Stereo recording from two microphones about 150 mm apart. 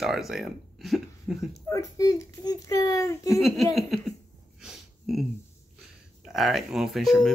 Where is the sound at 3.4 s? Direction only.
Centre (ahead or behind).